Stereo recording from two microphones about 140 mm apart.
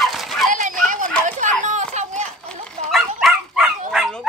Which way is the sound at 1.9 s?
55° right (ahead or behind).